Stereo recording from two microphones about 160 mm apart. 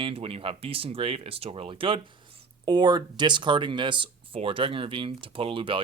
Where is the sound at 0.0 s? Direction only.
35° right (ahead or behind).